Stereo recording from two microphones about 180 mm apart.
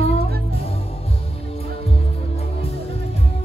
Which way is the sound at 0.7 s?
35° left (ahead or behind).